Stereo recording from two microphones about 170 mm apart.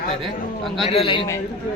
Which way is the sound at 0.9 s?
35° left (ahead or behind).